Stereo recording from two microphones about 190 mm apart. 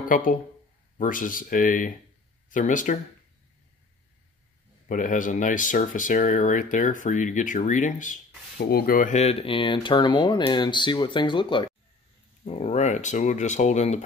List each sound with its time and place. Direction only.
0.1 s speech: 45° left (ahead or behind)
4.8 s speech: 45° left (ahead or behind)
8.5 s speech: 55° left (ahead or behind); by 14.0 s 40° left (ahead or behind)